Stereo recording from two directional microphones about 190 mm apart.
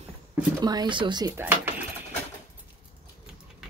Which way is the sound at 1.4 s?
10° right (ahead or behind).